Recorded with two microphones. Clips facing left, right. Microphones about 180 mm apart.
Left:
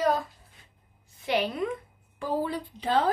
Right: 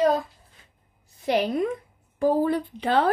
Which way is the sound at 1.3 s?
40° right (ahead or behind).